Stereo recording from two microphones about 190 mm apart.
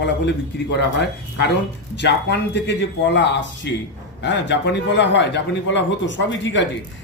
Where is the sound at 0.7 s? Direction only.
65° left (ahead or behind).